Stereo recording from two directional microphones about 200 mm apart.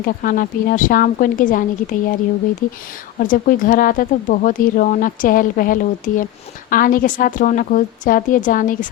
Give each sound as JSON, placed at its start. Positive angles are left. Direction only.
{"t": 0.0, "sound": "speech", "side_deg": 45}
{"t": 3.2, "sound": "a woman's voice", "side_deg": 45}